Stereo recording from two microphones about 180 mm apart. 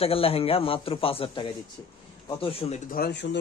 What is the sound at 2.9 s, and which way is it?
Speech, 65° left (ahead or behind).